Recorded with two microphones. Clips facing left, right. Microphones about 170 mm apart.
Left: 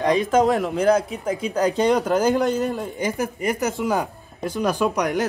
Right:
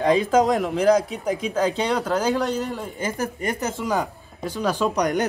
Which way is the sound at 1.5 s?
15° left (ahead or behind).